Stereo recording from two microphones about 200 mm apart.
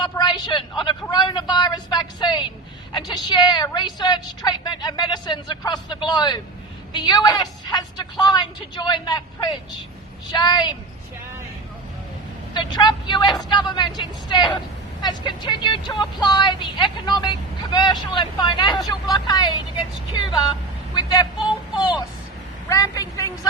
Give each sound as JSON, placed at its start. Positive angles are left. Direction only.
{"t": 0.0, "sound": "a woman's voice", "side_deg": 20}
{"t": 12.5, "sound": "a woman's voice", "side_deg": 20}
{"t": 20.9, "sound": "speech", "side_deg": 20}